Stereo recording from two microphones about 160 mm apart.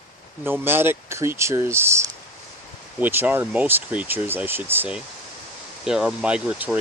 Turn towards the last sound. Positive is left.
turn(degrees=-10)  # may be behind; listen again after turning